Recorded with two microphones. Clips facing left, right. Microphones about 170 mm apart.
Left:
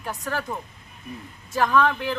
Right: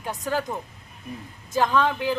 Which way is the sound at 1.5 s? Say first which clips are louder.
Left 1 dB; 20° right (ahead or behind).